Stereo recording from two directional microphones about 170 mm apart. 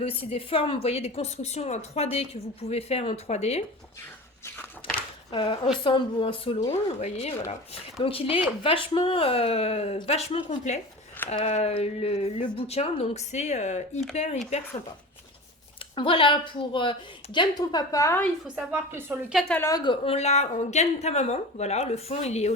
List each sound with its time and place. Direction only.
0.0 s a woman's voice: 35° left (ahead or behind)
4.4 s a sound: 10° left (ahead or behind)
5.3 s a woman's voice: 30° left (ahead or behind)
16.0 s a woman's voice: 30° left (ahead or behind)
18.4 s a woman's voice: 10° right (ahead or behind)
19.3 s a woman's voice: centre (ahead or behind)
19.5 s a woman's voice: 20° left (ahead or behind); by 22.5 s 40° left (ahead or behind)